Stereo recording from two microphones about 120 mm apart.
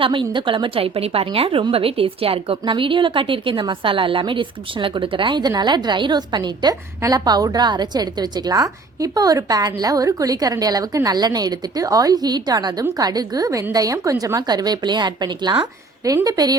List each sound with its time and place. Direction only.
0.0 s a woman's voice: 45° right (ahead or behind)